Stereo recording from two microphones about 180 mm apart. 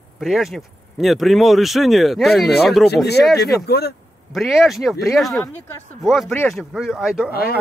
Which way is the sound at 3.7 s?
60° left (ahead or behind).